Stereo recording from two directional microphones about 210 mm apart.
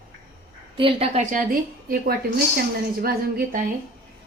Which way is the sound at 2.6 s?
45° right (ahead or behind).